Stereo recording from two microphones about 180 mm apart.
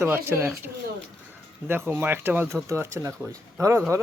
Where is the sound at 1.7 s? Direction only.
10° right (ahead or behind).